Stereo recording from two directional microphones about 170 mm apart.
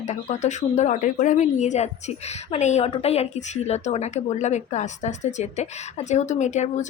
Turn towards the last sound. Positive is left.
turn(degrees=45)  # may be behind; listen again after turning